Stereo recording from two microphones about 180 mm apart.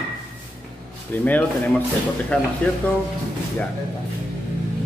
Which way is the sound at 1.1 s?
10° left (ahead or behind).